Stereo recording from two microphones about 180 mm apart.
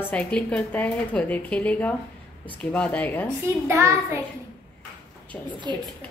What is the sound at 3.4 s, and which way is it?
Speech, 15° right (ahead or behind).